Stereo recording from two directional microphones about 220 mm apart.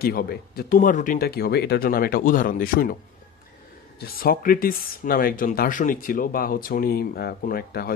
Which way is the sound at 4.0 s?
40° left (ahead or behind).